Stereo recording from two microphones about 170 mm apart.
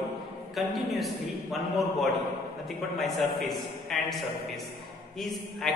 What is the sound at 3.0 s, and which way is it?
A man's voice, centre (ahead or behind).